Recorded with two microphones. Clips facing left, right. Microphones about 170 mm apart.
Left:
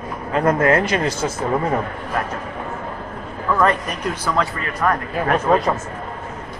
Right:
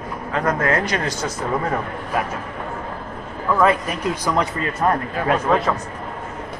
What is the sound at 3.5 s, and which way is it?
A man's voice, 10° right (ahead or behind).